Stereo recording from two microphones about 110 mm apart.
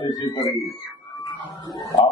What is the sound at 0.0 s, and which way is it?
Speech, 35° left (ahead or behind).